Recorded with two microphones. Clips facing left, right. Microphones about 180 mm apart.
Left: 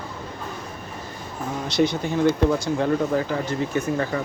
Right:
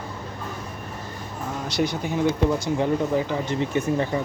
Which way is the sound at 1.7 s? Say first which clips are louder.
Left 3 dB; 10° right (ahead or behind).